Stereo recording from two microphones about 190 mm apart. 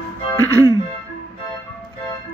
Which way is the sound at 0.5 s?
15° right (ahead or behind).